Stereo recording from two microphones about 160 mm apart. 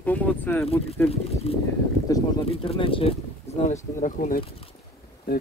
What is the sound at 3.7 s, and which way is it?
Speech, 55° left (ahead or behind).